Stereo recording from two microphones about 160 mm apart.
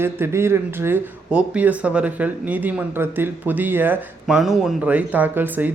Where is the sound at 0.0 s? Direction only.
15° right (ahead or behind).